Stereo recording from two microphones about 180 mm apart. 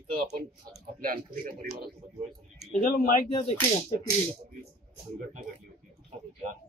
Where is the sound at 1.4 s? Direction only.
50° right (ahead or behind).